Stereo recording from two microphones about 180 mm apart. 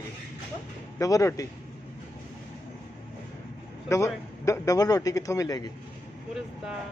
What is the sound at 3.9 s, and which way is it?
A man's voice, 15° left (ahead or behind).